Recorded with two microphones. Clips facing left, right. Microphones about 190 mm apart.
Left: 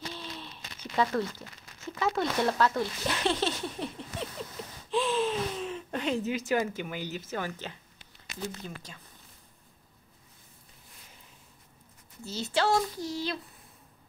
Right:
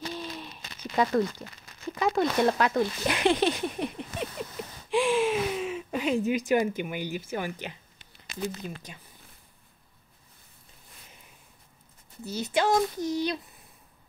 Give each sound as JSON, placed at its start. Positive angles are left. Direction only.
{"t": 0.1, "sound": "a sound", "side_deg": -15}
{"t": 2.0, "sound": "child singing", "side_deg": -15}
{"t": 2.8, "sound": "speech", "side_deg": -15}
{"t": 8.4, "sound": "child singing", "side_deg": -15}
{"t": 12.3, "sound": "child singing", "side_deg": -15}